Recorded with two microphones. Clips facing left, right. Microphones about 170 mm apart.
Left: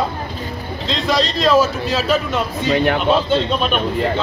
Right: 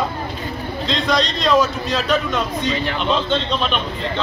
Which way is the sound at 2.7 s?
50° left (ahead or behind).